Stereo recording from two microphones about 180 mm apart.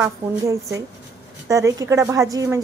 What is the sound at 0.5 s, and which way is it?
A woman's voice, 15° right (ahead or behind).